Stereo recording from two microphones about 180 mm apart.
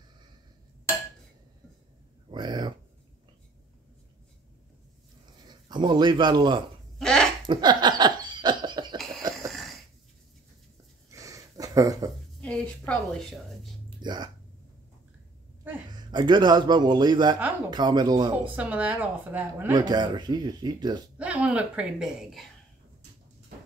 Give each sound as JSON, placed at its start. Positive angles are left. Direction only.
{"t": 2.3, "sound": "a sound", "side_deg": -25}
{"t": 5.5, "sound": "a man's voice", "side_deg": -25}
{"t": 7.0, "sound": "a sound", "side_deg": 5}
{"t": 7.4, "sound": "laughter", "side_deg": -25}
{"t": 8.9, "sound": "cough", "side_deg": 0}
{"t": 9.5, "sound": "wheeze", "side_deg": 0}
{"t": 11.1, "sound": "a sound", "side_deg": -20}
{"t": 12.4, "sound": "a woman's voice", "side_deg": 5}
{"t": 13.8, "sound": "a sound", "side_deg": -25}
{"t": 15.9, "sound": "speech", "side_deg": -25}
{"t": 18.6, "sound": "a woman's voice", "side_deg": -10}
{"t": 19.7, "sound": "speech", "side_deg": -25}
{"t": 21.2, "sound": "a woman's voice", "side_deg": -5}